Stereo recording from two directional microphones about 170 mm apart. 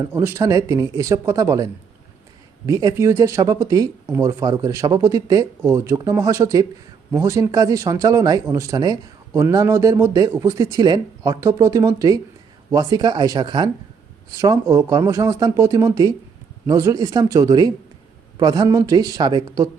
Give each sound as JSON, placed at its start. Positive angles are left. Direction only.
{"t": 0.0, "sound": "a man's voice", "side_deg": -15}